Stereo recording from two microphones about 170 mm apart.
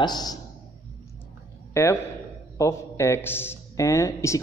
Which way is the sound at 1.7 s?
15° left (ahead or behind).